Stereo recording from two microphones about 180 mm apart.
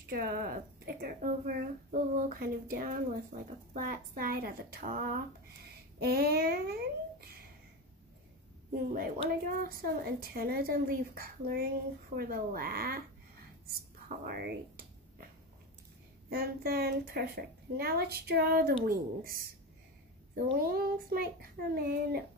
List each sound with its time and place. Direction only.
0.1 s a child's voice: 55° right (ahead or behind)
8.9 s a woman's voice: 50° right (ahead or behind)
13.7 s a sound: 55° right (ahead or behind)
16.3 s a woman's voice: 60° right (ahead or behind)
20.6 s a woman's voice: 55° right (ahead or behind)